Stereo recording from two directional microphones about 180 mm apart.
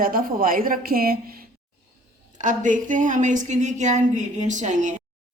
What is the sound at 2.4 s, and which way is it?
A woman's voice, 45° right (ahead or behind).